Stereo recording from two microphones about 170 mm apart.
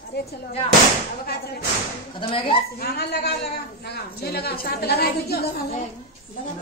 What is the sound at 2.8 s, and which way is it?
A woman's voice, 70° left (ahead or behind).